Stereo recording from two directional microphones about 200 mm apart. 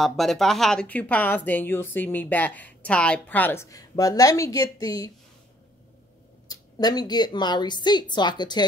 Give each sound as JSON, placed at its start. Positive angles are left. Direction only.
{"t": 0.0, "sound": "speech", "side_deg": 0}
{"t": 6.5, "sound": "a woman's voice", "side_deg": 20}